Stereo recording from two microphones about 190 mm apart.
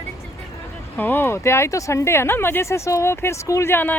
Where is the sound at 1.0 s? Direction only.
10° left (ahead or behind).